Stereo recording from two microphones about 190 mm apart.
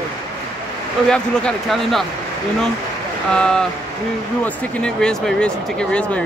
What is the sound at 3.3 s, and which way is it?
Speech, 5° left (ahead or behind).